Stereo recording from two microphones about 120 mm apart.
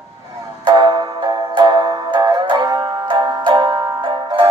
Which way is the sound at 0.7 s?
40° right (ahead or behind).